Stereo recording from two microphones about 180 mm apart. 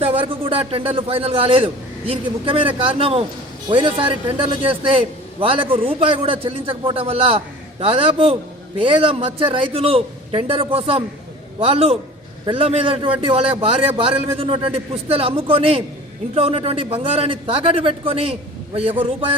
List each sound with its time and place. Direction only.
0.0 s a man's voice: 30° right (ahead or behind)